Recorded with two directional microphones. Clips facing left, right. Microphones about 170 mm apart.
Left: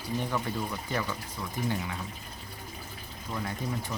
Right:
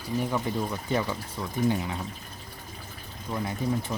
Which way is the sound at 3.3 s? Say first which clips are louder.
Right 5 dB; 20° right (ahead or behind).